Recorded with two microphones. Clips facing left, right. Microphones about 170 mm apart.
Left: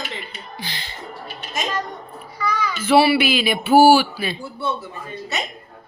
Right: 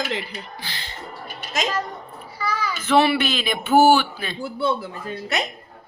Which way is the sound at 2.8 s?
10° left (ahead or behind).